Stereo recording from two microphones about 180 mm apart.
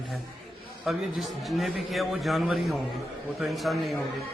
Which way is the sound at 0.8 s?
Centre (ahead or behind).